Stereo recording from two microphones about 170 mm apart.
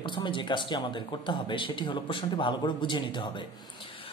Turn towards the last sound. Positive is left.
turn(degrees=30)  # may be behind; listen again after turning